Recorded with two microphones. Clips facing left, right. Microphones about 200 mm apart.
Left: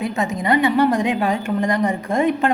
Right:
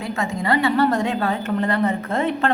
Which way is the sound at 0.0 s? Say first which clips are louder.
Left 3 dB; 20° left (ahead or behind).